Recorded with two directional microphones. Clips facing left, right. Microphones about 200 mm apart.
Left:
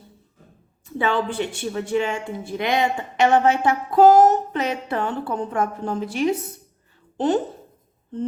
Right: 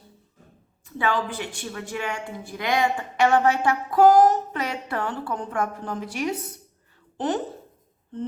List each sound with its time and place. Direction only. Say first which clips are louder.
0.9 s speech: left 4 dB; 25° left (ahead or behind)